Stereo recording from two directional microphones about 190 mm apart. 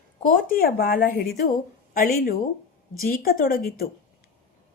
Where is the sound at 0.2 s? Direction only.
50° left (ahead or behind).